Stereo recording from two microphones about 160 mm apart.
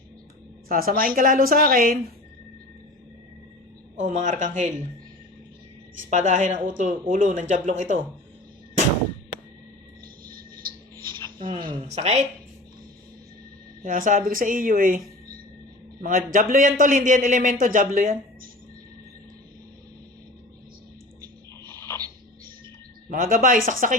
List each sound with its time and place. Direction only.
0.7 s a man's voice: 65° right (ahead or behind)
3.9 s speech: 50° right (ahead or behind)
6.1 s speech: 50° right (ahead or behind)
11.9 s speech: 45° right (ahead or behind)
13.8 s a man's voice: 55° right (ahead or behind)
21.6 s a sound: 15° left (ahead or behind)
23.0 s a man's voice: 60° right (ahead or behind)